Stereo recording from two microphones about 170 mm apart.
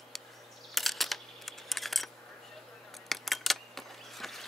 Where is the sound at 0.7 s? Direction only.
Centre (ahead or behind).